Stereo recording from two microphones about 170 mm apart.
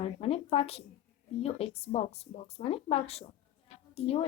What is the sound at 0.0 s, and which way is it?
A woman's voice, 35° left (ahead or behind).